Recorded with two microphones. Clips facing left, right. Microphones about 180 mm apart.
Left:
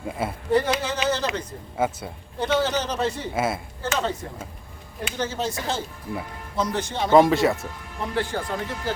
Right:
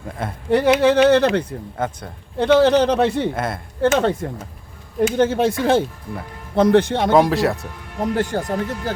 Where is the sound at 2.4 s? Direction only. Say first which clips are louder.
Right 10 dB; 65° right (ahead or behind).